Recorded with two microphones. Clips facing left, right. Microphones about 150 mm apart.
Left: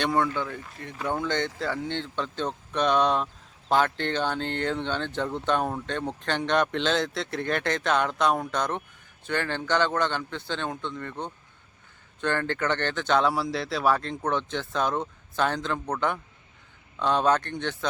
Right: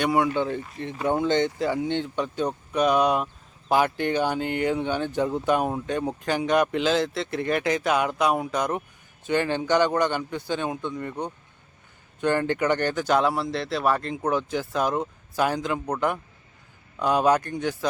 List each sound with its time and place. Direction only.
0.0 s speech: 10° right (ahead or behind)
0.4 s speech: 25° right (ahead or behind); by 17.8 s 10° right (ahead or behind)